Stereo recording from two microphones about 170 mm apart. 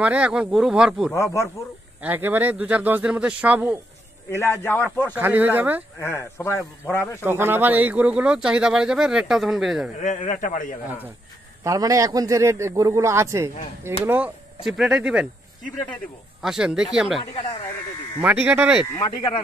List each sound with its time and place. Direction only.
0.0 s speech: 5° right (ahead or behind)
1.1 s a man's voice: 15° left (ahead or behind)
2.0 s speech: 10° right (ahead or behind)
4.3 s a man's voice: 15° left (ahead or behind)
5.2 s speech: 10° right (ahead or behind)
5.9 s a man's voice: 15° left (ahead or behind)
7.2 s speech: 15° right (ahead or behind)
9.9 s a man's voice: 45° left (ahead or behind)
11.6 s speech: 20° right (ahead or behind); by 17.2 s 5° right (ahead or behind)
18.2 s speech: 10° right (ahead or behind)